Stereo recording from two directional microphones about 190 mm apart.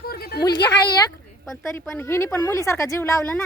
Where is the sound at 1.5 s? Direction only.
5° left (ahead or behind).